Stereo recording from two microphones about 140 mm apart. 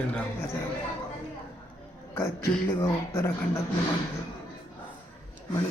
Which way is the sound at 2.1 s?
20° left (ahead or behind).